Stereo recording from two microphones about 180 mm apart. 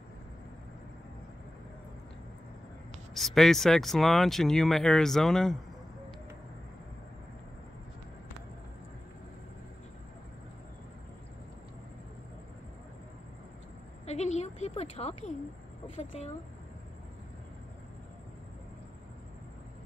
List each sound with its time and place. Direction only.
3.2 s speech: centre (ahead or behind)
14.0 s a sound: 40° left (ahead or behind)
16.0 s a woman's voice: 40° left (ahead or behind)